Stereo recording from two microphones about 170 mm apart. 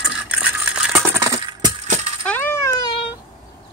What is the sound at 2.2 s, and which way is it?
Coin, 10° left (ahead or behind).